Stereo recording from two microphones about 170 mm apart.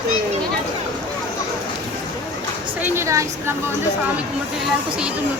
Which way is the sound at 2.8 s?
15° right (ahead or behind).